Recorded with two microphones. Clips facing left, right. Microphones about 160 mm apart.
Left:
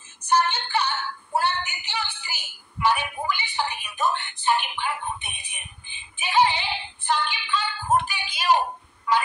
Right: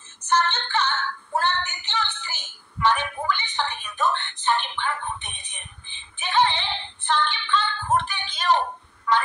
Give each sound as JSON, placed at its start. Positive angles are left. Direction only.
{"t": 0.2, "sound": "music", "side_deg": 10}